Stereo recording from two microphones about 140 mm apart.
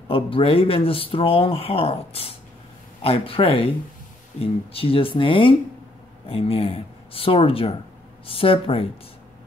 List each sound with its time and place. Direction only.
0.1 s speech: 40° left (ahead or behind)